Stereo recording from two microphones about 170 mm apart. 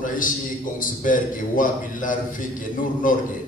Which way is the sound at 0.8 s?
50° left (ahead or behind).